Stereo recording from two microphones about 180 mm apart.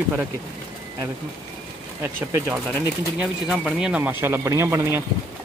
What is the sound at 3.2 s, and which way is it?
Speech, 5° right (ahead or behind).